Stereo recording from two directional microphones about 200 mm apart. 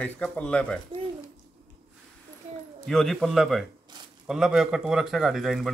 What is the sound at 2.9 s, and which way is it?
A man's voice, centre (ahead or behind).